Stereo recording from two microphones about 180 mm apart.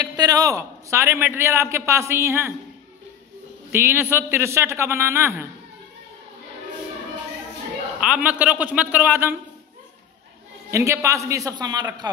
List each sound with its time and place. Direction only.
0.0 s a man's voice: 20° right (ahead or behind)
3.7 s a man's voice: 15° right (ahead or behind)
8.0 s a man's voice: 5° right (ahead or behind)
10.7 s a man's voice: 15° right (ahead or behind)